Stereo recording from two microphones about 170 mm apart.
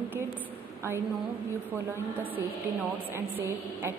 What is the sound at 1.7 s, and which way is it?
A woman's voice, 10° right (ahead or behind).